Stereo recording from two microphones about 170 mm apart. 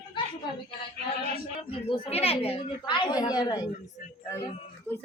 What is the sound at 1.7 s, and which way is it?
A woman's voice, 35° left (ahead or behind).